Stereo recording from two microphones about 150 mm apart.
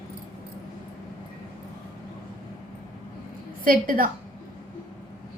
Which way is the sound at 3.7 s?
70° right (ahead or behind).